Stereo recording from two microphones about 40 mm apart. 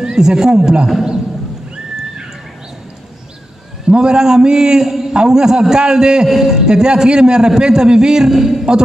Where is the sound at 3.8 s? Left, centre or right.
Centre.